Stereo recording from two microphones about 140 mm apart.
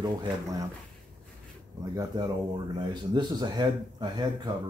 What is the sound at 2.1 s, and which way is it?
Speech, 30° right (ahead or behind).